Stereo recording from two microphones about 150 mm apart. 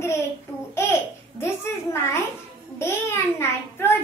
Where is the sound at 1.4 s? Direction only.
20° left (ahead or behind).